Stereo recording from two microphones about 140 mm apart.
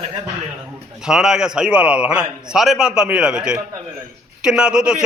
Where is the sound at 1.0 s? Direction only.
5° right (ahead or behind).